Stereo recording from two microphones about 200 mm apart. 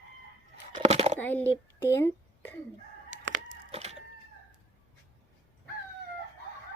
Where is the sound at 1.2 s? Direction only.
10° left (ahead or behind).